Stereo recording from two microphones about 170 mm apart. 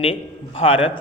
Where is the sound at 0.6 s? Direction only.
35° left (ahead or behind).